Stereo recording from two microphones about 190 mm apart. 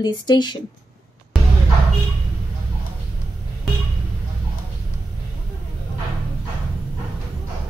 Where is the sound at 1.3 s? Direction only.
Centre (ahead or behind).